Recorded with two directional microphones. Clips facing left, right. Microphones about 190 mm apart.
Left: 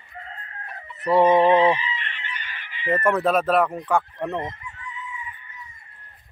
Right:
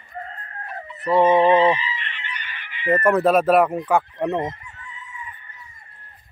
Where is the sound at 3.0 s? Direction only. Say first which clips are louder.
Right 4 dB; 5° right (ahead or behind).